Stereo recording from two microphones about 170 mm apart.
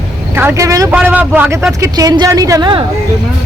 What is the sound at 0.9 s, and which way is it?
A man's voice, 5° right (ahead or behind).